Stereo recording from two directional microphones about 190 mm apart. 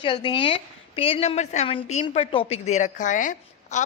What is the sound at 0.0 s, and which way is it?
A woman's voice, 25° left (ahead or behind).